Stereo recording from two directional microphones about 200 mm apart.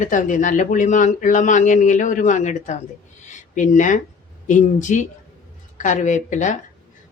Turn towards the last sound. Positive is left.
turn(degrees=40)  # may be behind; listen again after turning